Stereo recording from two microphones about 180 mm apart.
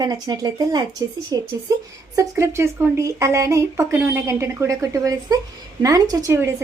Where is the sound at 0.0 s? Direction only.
20° right (ahead or behind).